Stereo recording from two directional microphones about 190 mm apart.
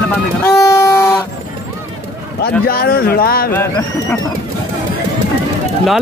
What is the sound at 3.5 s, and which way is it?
Speech, 15° left (ahead or behind).